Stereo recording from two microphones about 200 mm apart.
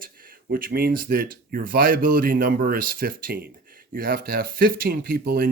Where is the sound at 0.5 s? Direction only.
45° right (ahead or behind).